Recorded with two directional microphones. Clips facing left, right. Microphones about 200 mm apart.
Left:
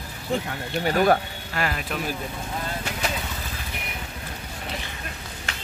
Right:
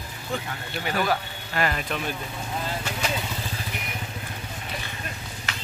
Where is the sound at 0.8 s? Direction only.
45° left (ahead or behind).